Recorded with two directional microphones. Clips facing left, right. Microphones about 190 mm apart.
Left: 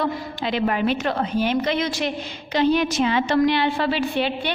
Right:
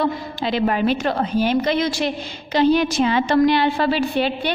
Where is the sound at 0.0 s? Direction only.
35° right (ahead or behind).